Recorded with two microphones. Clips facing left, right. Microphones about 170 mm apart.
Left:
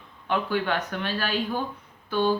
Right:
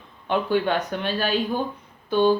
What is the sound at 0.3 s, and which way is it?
Speech, 20° right (ahead or behind).